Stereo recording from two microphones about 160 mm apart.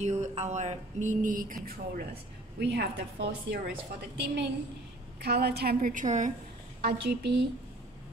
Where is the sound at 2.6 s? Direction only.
90° right.